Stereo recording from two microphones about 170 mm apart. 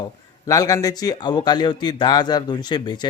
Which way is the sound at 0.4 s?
20° left (ahead or behind).